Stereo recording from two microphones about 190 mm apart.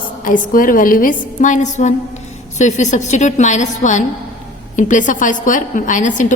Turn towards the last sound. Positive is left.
turn(degrees=40)  # may be behind; listen again after turning